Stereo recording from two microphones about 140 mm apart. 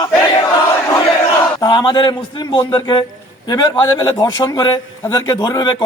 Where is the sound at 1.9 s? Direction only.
30° left (ahead or behind).